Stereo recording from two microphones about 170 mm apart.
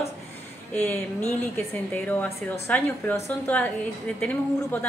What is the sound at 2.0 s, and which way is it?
Mantra, 10° left (ahead or behind).